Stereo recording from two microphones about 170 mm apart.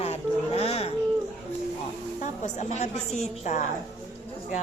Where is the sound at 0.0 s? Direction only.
40° left (ahead or behind).